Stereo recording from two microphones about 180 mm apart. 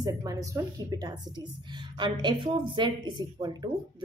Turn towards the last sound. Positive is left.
turn(degrees=-25)  # may be behind; listen again after turning